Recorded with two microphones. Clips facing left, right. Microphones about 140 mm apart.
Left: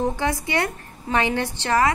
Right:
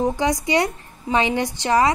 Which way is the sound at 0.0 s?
15° right (ahead or behind).